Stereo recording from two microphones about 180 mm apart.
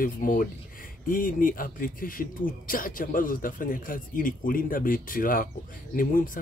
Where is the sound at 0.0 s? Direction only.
50° left (ahead or behind).